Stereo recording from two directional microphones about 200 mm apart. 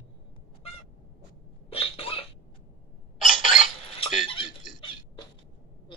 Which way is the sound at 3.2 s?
25° right (ahead or behind).